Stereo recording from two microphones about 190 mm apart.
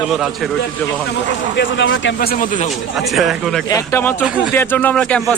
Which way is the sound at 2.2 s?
50° left (ahead or behind).